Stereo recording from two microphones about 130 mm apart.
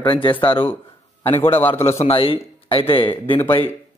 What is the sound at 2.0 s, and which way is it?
Speech, 45° left (ahead or behind).